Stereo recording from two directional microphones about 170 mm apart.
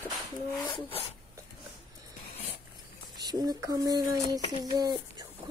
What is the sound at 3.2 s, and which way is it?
A child's voice, 20° right (ahead or behind).